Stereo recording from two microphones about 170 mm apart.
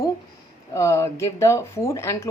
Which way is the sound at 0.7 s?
15° left (ahead or behind).